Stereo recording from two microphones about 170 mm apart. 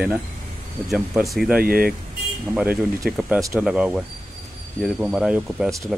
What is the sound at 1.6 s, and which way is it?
Speech, 60° right (ahead or behind).